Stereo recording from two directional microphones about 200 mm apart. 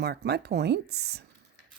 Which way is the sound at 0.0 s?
55° right (ahead or behind).